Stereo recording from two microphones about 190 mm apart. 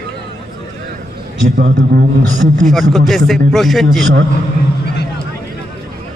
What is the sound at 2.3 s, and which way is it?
Speech, 40° right (ahead or behind).